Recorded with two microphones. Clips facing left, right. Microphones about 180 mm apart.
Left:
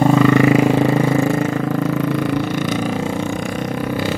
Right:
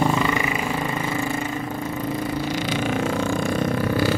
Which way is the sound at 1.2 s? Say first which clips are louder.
Left 9 dB; 75° left (ahead or behind).